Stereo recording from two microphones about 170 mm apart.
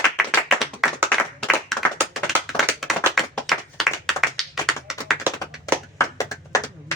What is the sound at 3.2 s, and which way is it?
Clapping, centre (ahead or behind).